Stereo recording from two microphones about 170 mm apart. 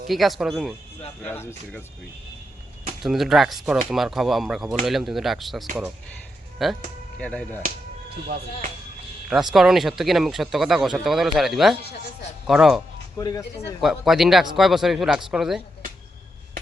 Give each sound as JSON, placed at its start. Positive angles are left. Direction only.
{"t": 0.1, "sound": "speech", "side_deg": 0}
{"t": 1.2, "sound": "speech", "side_deg": 15}
{"t": 3.0, "sound": "speech", "side_deg": 0}
{"t": 9.5, "sound": "speech", "side_deg": 0}
{"t": 13.1, "sound": "speech", "side_deg": 20}
{"t": 13.8, "sound": "speech", "side_deg": 0}